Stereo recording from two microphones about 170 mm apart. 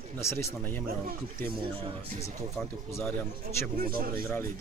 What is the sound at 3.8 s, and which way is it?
Speech, 60° right (ahead or behind).